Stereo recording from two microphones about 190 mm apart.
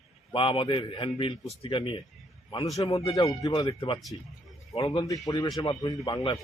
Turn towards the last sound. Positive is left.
turn(degrees=25)  # may be behind; listen again after turning